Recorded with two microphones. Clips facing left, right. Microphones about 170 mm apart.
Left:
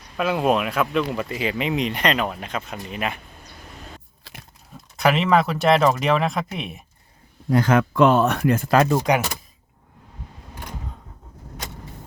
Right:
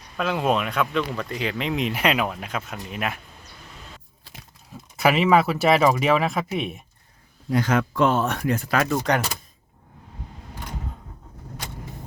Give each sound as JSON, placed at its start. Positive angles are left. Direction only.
{"t": 0.2, "sound": "speech", "side_deg": 5}
{"t": 4.2, "sound": "biting", "side_deg": 70}
{"t": 4.7, "sound": "speech", "side_deg": -5}
{"t": 7.5, "sound": "speech", "side_deg": 55}
{"t": 9.1, "sound": "speech", "side_deg": 10}